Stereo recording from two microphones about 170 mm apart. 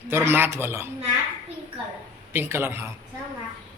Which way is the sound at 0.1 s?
15° right (ahead or behind).